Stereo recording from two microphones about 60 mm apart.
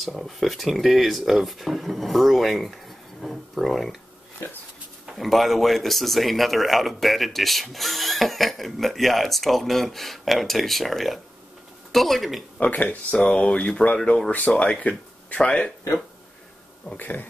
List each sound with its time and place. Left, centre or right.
0.0 s speech: centre
4.4 s speech: left
5.0 s speech: centre
12.5 s speech: left
16.9 s speech: left